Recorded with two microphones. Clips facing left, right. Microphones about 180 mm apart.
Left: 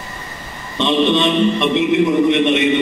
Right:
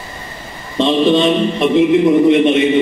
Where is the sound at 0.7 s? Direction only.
35° right (ahead or behind).